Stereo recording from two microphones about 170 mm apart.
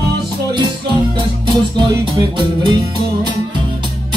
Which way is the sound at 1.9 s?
20° right (ahead or behind).